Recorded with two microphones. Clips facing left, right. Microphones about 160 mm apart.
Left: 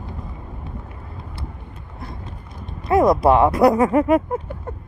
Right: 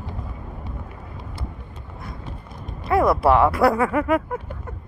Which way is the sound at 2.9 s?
20° left (ahead or behind).